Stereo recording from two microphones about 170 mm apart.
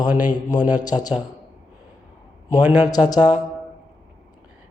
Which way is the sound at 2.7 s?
25° left (ahead or behind).